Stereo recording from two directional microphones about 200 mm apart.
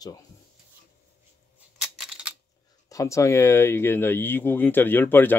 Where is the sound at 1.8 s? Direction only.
Centre (ahead or behind).